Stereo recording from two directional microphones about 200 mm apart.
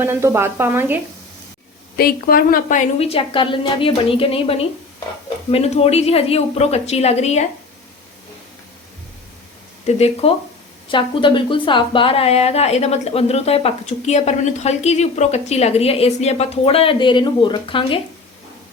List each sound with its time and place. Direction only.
0.0 s speech: 10° right (ahead or behind)
2.0 s a woman's voice: 50° left (ahead or behind)
9.8 s a woman's voice: 30° left (ahead or behind)